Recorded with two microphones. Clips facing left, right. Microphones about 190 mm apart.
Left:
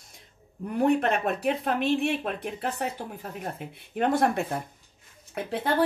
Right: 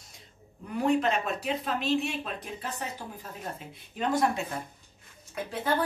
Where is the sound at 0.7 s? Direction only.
55° left (ahead or behind).